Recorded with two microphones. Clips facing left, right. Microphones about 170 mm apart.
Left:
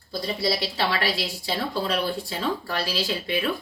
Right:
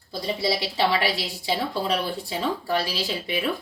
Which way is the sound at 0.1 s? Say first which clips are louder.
Right 1 dB; 15° right (ahead or behind).